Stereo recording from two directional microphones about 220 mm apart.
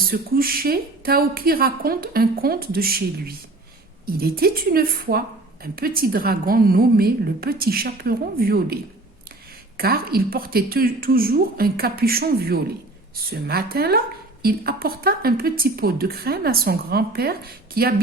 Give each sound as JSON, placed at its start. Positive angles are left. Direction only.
{"t": 0.0, "sound": "a woman's voice", "side_deg": -40}